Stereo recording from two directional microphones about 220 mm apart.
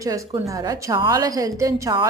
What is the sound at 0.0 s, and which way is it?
A woman's voice, 15° right (ahead or behind).